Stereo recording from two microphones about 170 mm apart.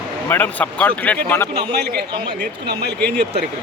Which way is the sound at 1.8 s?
70° right (ahead or behind).